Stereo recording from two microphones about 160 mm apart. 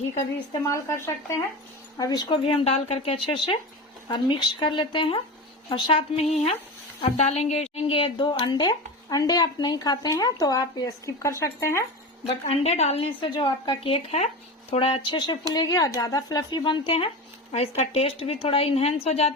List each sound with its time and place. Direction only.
0.7 s a woman's voice: 15° left (ahead or behind)
12.3 s a woman's voice: 40° left (ahead or behind)